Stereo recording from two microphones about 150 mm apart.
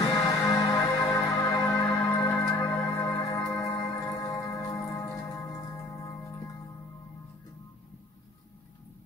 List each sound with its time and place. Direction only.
0.1 s music: 25° left (ahead or behind)